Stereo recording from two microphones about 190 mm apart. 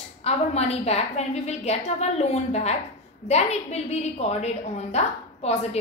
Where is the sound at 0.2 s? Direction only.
35° left (ahead or behind).